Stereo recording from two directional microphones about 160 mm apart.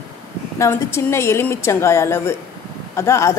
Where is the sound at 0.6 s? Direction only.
15° left (ahead or behind).